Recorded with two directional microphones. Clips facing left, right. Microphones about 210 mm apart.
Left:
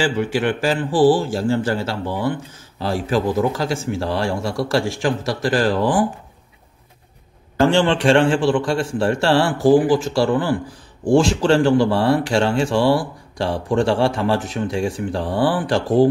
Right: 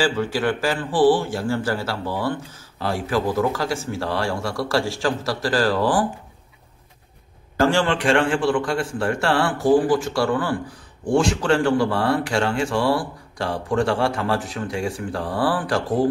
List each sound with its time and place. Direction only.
0.0 s speech: 20° left (ahead or behind)
7.6 s speech: 25° left (ahead or behind)